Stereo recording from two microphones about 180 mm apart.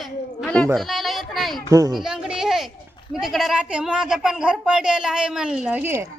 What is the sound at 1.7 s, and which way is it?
Speech, 20° right (ahead or behind).